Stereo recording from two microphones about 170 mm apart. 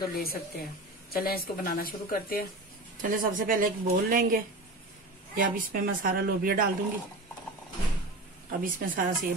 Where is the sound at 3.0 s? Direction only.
50° right (ahead or behind).